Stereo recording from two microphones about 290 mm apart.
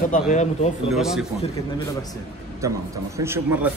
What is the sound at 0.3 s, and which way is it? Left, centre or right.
Speech, left.